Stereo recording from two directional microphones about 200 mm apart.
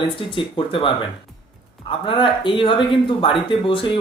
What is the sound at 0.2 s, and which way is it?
Speech, 25° left (ahead or behind).